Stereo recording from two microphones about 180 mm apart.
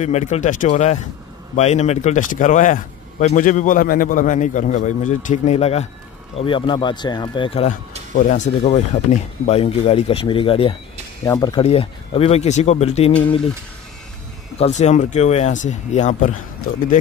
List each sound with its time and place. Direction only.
0.0 s a man's voice: 40° left (ahead or behind)
11.2 s speech: 20° left (ahead or behind)
11.6 s speech: 35° left (ahead or behind)
14.6 s speech: 40° left (ahead or behind)